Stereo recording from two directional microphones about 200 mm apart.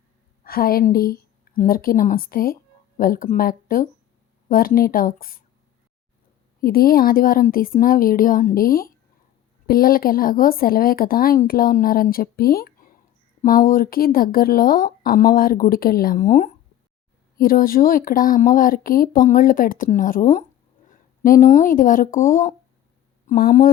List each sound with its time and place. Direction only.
0.4 s a woman's voice: 50° left (ahead or behind)
6.6 s speech: 45° left (ahead or behind)